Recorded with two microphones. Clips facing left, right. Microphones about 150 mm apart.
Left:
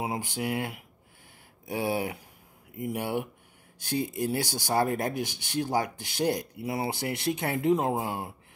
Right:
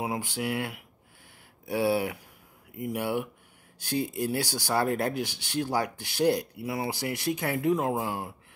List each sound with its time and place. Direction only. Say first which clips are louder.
0.0 s speech: even; 20° left (ahead or behind)